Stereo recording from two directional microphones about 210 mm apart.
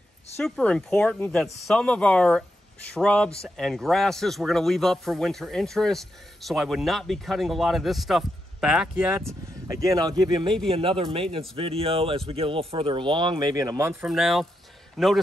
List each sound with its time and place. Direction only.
0.4 s a man's voice: 5° left (ahead or behind); by 13.9 s 15° right (ahead or behind)
14.0 s a man's voice: centre (ahead or behind)